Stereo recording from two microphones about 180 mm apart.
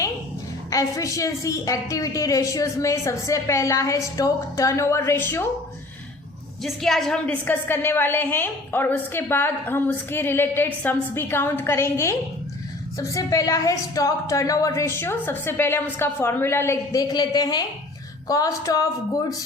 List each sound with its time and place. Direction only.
0.7 s a woman's voice: 20° left (ahead or behind)
6.6 s a woman's voice: centre (ahead or behind); by 18.9 s 20° left (ahead or behind)